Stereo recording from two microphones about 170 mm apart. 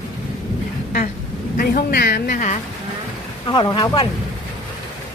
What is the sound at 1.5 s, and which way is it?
Speech, 60° left (ahead or behind).